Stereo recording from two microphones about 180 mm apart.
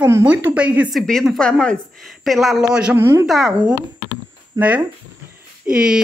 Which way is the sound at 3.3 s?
Centre (ahead or behind).